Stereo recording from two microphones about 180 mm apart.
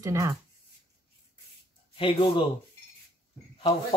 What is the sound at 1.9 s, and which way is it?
Speech, 30° left (ahead or behind).